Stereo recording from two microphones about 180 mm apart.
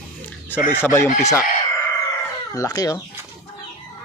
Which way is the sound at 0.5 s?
50° left (ahead or behind).